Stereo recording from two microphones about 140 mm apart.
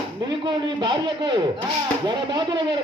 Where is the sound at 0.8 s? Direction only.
30° right (ahead or behind).